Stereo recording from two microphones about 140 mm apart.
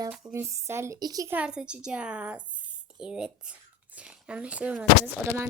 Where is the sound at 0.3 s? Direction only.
20° right (ahead or behind).